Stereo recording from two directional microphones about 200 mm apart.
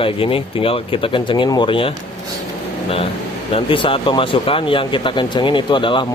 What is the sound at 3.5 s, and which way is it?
Speech, 25° left (ahead or behind).